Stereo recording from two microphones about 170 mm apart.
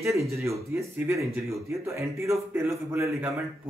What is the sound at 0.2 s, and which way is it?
A man's voice, 15° right (ahead or behind).